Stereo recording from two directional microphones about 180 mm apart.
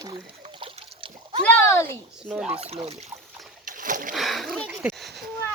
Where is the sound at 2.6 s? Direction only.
35° right (ahead or behind).